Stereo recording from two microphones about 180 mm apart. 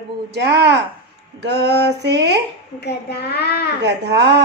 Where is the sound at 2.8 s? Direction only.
65° left (ahead or behind).